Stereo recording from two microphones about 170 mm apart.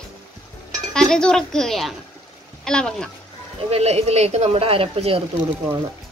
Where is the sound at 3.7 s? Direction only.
40° right (ahead or behind).